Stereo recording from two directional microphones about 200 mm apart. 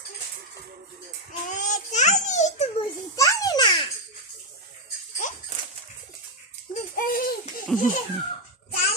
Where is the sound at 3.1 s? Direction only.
15° left (ahead or behind).